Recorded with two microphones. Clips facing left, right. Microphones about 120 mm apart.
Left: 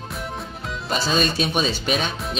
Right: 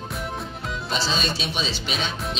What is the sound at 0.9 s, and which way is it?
Speech, 50° left (ahead or behind).